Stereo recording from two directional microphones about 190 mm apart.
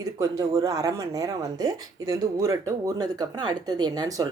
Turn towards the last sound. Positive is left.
turn(degrees=-20)  # may be behind; listen again after turning